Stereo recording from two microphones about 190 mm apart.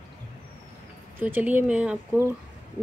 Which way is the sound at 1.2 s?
10° right (ahead or behind).